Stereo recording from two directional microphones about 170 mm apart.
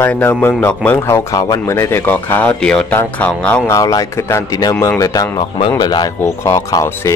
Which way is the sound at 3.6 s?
20° left (ahead or behind).